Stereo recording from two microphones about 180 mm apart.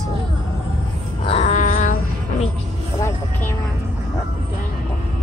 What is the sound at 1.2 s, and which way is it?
Cat, 35° left (ahead or behind).